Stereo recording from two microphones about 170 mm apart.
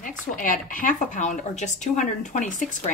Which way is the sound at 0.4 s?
50° left (ahead or behind).